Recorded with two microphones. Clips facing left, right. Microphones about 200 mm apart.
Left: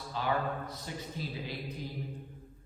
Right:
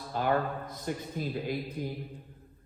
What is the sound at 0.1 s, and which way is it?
A man's voice, 50° right (ahead or behind).